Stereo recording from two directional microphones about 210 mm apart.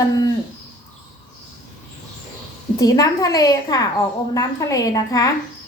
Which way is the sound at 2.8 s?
15° left (ahead or behind).